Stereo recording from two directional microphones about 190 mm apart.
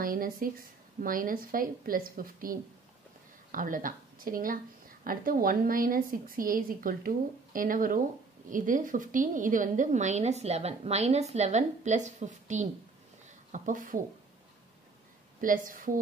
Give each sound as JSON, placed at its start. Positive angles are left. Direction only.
{"t": 0.0, "sound": "a woman's voice", "side_deg": -50}
{"t": 15.4, "sound": "a woman's voice", "side_deg": -45}